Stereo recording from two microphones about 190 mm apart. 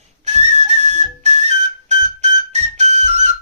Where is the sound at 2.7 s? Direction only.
35° right (ahead or behind).